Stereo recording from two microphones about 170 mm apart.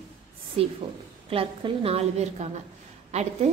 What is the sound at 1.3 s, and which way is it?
A woman's voice, 35° right (ahead or behind).